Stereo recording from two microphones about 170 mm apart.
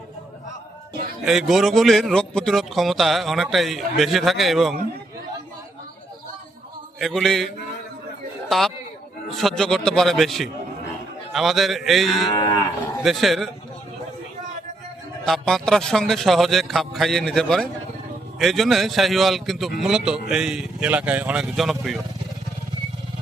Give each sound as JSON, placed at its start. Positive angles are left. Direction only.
{"t": 1.2, "sound": "a man's voice", "side_deg": 0}
{"t": 7.0, "sound": "a man's voice", "side_deg": 0}
{"t": 12.3, "sound": "moo", "side_deg": 20}
{"t": 13.0, "sound": "a man's voice", "side_deg": 0}
{"t": 15.2, "sound": "a man's voice", "side_deg": 5}